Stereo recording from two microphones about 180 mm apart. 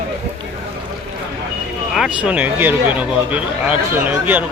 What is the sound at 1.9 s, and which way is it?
Speech, 5° right (ahead or behind).